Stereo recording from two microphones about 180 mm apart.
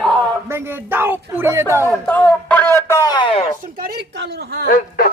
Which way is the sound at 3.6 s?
55° right (ahead or behind).